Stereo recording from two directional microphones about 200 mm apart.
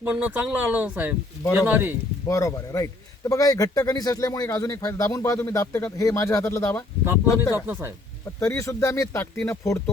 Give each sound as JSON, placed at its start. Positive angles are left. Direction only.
{"t": 0.0, "sound": "speech", "side_deg": -10}
{"t": 2.2, "sound": "a man's voice", "side_deg": 15}
{"t": 7.5, "sound": "speech", "side_deg": -10}
{"t": 8.4, "sound": "a man's voice", "side_deg": 15}